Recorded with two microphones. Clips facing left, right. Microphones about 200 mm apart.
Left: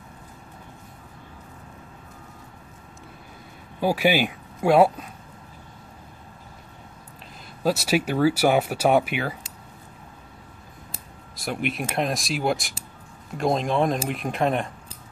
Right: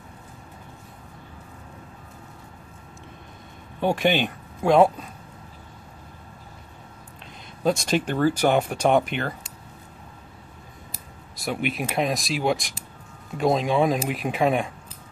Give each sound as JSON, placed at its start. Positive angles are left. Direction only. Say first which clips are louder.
{"t": 3.8, "sound": "speech", "louder": "left 1 dB", "side_deg": 5}
{"t": 7.6, "sound": "speech", "louder": "even", "side_deg": 5}
{"t": 11.3, "sound": "speech", "louder": "right 1 dB", "side_deg": 0}